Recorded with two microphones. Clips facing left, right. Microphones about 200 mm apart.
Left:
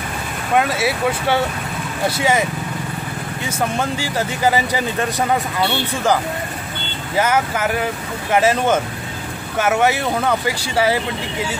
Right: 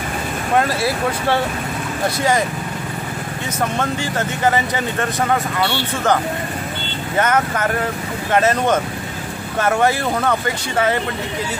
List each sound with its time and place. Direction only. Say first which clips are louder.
0.6 s speech: left 1 dB; centre (ahead or behind)
3.7 s speech: even; 10° left (ahead or behind)
7.2 s speech: even; 10° left (ahead or behind)